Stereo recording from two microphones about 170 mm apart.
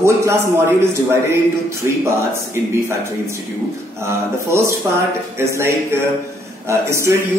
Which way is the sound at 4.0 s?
15° right (ahead or behind).